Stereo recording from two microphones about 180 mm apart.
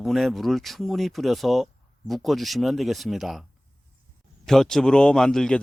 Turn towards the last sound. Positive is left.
turn(degrees=5)  # may be behind; listen again after turning